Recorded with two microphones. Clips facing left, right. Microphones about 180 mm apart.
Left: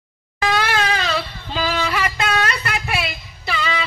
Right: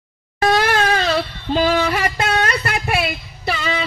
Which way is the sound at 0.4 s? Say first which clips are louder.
Right 4 dB; 45° right (ahead or behind).